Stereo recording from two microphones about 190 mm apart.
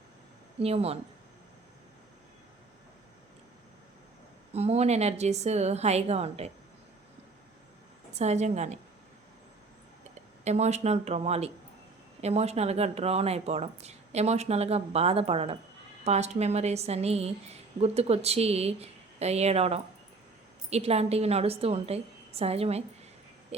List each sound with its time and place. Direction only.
0.6 s a woman's voice: 30° right (ahead or behind)
4.5 s a woman's voice: 35° right (ahead or behind)
8.1 s a woman's voice: 35° right (ahead or behind)
10.4 s a woman's voice: 35° right (ahead or behind)
23.5 s a sound: 35° right (ahead or behind)